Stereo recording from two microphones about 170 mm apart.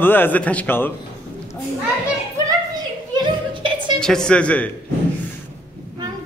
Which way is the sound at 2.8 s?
25° right (ahead or behind).